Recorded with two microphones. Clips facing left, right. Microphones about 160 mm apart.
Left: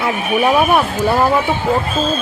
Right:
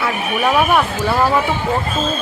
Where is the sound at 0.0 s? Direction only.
20° left (ahead or behind).